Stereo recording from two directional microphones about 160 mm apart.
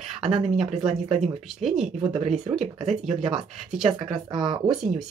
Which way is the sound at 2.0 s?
40° right (ahead or behind).